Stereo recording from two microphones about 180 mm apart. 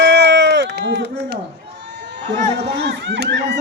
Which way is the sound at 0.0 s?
70° right (ahead or behind).